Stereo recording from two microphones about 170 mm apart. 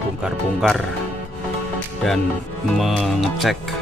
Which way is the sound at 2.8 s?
Centre (ahead or behind).